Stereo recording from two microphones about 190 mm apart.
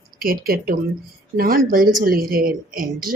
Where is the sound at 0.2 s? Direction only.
50° right (ahead or behind).